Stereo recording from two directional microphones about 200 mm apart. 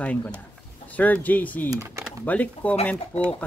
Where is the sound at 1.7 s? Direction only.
15° right (ahead or behind).